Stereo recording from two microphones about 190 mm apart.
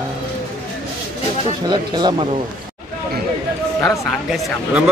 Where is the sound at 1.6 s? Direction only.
20° right (ahead or behind).